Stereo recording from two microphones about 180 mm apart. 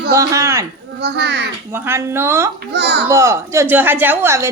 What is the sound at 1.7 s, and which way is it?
Speech, 15° right (ahead or behind).